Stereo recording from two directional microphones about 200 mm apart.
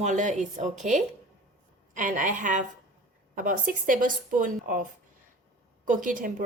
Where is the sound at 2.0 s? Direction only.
40° right (ahead or behind).